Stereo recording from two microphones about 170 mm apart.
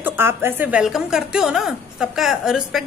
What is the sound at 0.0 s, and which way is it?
Speech, 15° right (ahead or behind).